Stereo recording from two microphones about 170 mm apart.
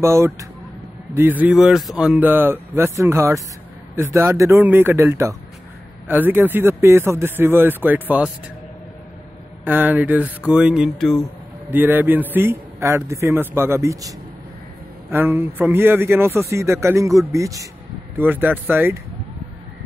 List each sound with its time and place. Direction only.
0.0 s a man's voice: 15° right (ahead or behind)
9.7 s a man's voice: 10° right (ahead or behind)
11.7 s a man's voice: 10° right (ahead or behind)